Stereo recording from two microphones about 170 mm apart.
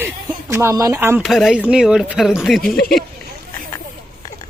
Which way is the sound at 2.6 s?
60° left (ahead or behind).